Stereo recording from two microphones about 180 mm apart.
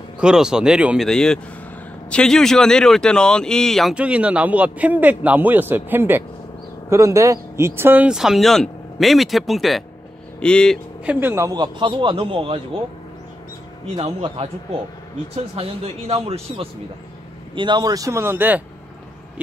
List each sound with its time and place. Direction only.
0.2 s a man's voice: 5° right (ahead or behind)
11.1 s a man's voice: 10° right (ahead or behind); by 12.5 s 30° right (ahead or behind)
13.9 s speech: 30° right (ahead or behind)
15.5 s a man's voice: 35° right (ahead or behind); by 18.6 s 10° right (ahead or behind)